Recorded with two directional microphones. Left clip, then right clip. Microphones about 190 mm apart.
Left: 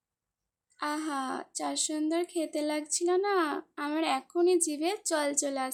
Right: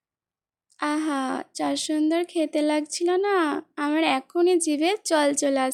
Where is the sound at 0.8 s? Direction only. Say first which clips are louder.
Right 7 dB; 35° right (ahead or behind).